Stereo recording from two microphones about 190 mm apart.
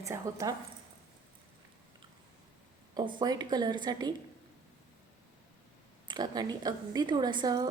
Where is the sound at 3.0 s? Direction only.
25° right (ahead or behind).